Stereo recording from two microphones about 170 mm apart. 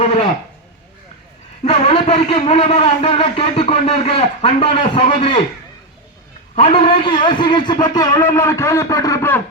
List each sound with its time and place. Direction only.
0.0 s speech: 35° left (ahead or behind)
1.6 s a man's voice: 35° left (ahead or behind)
6.6 s a man's voice: 35° left (ahead or behind); by 9.4 s 15° left (ahead or behind)